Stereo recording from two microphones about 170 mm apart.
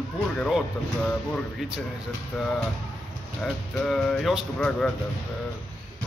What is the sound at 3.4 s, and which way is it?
Speech, 5° left (ahead or behind).